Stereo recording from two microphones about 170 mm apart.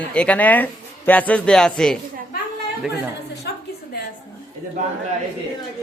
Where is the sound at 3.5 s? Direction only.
75° left (ahead or behind).